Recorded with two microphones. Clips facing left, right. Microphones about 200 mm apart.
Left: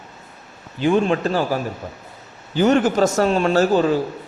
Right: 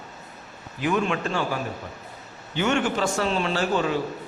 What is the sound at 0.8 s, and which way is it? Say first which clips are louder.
A man's voice: left 7 dB; 30° left (ahead or behind).